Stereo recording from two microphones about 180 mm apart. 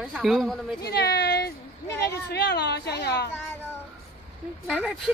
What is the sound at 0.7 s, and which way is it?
Speech, 65° left (ahead or behind).